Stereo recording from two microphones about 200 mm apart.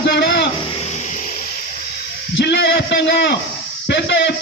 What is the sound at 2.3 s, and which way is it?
A man's voice, 60° left (ahead or behind).